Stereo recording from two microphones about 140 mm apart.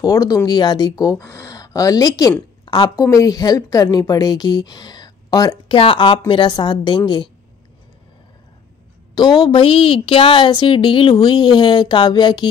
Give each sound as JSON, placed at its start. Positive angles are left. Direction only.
{"t": 0.0, "sound": "a woman's voice", "side_deg": 25}
{"t": 5.7, "sound": "a woman's voice", "side_deg": 40}
{"t": 9.1, "sound": "a woman's voice", "side_deg": 30}